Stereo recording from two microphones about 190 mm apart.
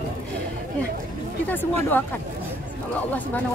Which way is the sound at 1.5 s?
10° left (ahead or behind).